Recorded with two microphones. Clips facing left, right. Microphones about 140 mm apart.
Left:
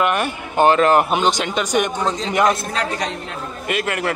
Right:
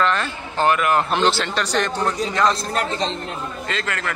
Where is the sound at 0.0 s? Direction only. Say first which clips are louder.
Left 2 dB; 15° left (ahead or behind).